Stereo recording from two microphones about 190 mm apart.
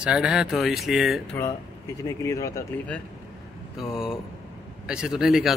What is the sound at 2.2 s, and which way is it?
Speech, 15° left (ahead or behind).